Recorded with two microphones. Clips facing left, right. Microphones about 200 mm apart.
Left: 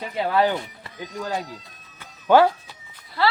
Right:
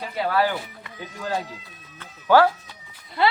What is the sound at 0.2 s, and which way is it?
Speech, 20° left (ahead or behind).